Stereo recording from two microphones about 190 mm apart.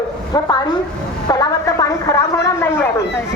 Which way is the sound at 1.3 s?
20° left (ahead or behind).